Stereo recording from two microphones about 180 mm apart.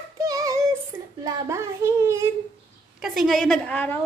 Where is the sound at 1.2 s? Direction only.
15° right (ahead or behind).